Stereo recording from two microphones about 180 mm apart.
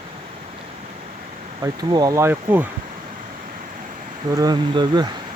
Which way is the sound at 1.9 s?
20° right (ahead or behind).